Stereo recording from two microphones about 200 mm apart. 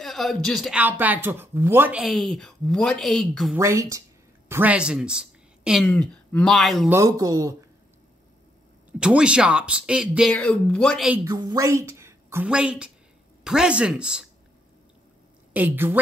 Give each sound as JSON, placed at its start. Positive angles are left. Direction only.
{"t": 0.0, "sound": "speech", "side_deg": 0}
{"t": 3.5, "sound": "speech", "side_deg": -15}
{"t": 6.9, "sound": "speech", "side_deg": -15}
{"t": 8.9, "sound": "speech", "side_deg": -5}
{"t": 11.2, "sound": "a woman's voice", "side_deg": -15}
{"t": 15.5, "sound": "speech", "side_deg": -10}